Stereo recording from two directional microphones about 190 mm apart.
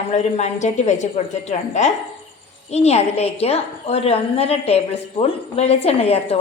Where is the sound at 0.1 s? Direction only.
35° left (ahead or behind).